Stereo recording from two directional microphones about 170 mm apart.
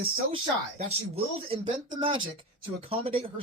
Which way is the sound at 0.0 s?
35° right (ahead or behind).